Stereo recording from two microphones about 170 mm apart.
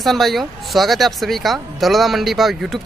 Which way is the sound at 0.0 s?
Centre (ahead or behind).